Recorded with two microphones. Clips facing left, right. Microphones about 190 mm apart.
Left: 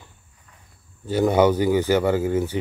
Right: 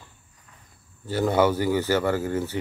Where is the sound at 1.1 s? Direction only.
15° left (ahead or behind).